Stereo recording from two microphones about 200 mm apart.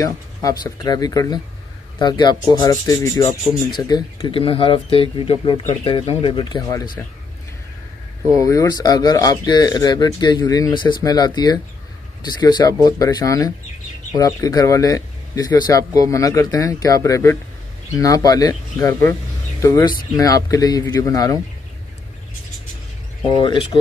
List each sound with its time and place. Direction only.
0.0 s speech: 15° left (ahead or behind)
8.4 s speech: 15° left (ahead or behind)
23.4 s speech: 25° left (ahead or behind)